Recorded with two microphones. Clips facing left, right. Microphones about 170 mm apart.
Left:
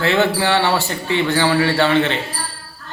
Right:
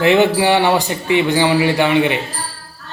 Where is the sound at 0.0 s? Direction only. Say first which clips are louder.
Right 4 dB; 15° right (ahead or behind).